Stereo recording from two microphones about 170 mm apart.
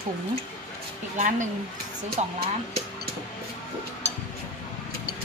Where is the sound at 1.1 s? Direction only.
45° right (ahead or behind).